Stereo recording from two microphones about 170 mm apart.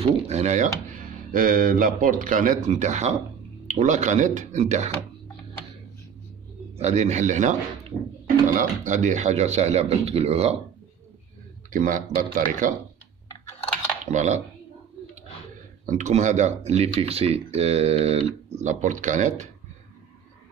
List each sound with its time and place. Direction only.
0.0 s a man's voice: 40° right (ahead or behind)
1.3 s speech: 55° right (ahead or behind)
6.8 s speech: 40° right (ahead or behind)
8.5 s a man's voice: 45° right (ahead or behind)
11.7 s speech: 50° right (ahead or behind)
14.1 s speech: 45° right (ahead or behind)
15.8 s speech: 50° right (ahead or behind)